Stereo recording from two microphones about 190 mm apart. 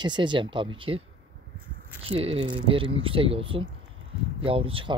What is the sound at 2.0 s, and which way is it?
Speech, 30° right (ahead or behind).